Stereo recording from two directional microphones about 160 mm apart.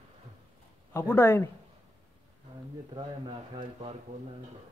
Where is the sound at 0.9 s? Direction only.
15° left (ahead or behind).